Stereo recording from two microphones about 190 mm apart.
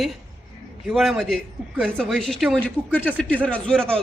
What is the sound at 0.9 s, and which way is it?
Speech, centre (ahead or behind).